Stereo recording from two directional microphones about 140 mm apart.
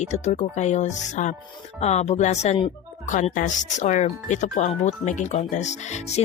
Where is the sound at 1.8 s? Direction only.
50° left (ahead or behind).